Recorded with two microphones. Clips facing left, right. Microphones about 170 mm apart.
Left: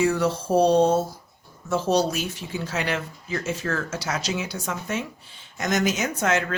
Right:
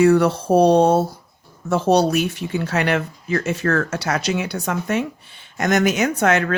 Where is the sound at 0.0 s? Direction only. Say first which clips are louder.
Right 8 dB; 60° right (ahead or behind).